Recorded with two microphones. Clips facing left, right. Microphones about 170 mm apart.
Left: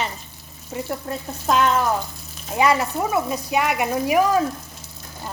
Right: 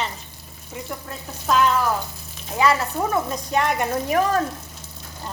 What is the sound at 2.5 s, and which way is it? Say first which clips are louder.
Speech: left 1 dB; 20° left (ahead or behind).